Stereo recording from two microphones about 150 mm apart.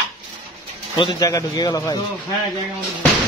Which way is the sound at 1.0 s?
30° left (ahead or behind).